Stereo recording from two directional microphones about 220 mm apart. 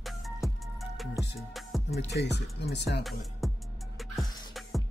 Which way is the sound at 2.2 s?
50° left (ahead or behind).